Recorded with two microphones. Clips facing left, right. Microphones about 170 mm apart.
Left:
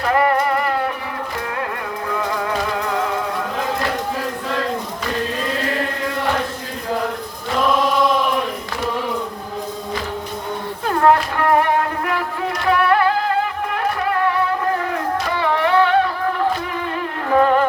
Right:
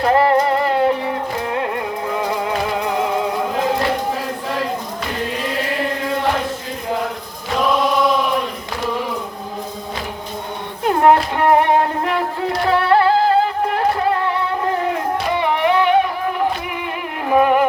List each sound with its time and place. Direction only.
0.0 s music: 30° right (ahead or behind)
10.8 s music: 20° right (ahead or behind)
17.2 s music: 15° right (ahead or behind)